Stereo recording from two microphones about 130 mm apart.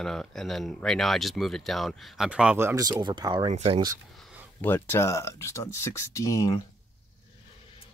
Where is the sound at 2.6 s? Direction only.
30° right (ahead or behind).